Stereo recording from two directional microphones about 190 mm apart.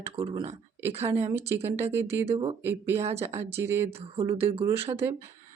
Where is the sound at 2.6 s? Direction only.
10° right (ahead or behind).